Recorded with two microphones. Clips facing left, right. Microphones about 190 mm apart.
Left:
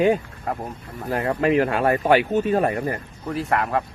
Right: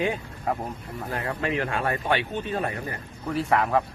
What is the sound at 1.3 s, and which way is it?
Speech, 40° left (ahead or behind).